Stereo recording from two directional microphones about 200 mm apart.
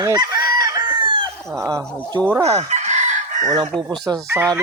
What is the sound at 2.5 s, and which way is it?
Chicken, 35° right (ahead or behind).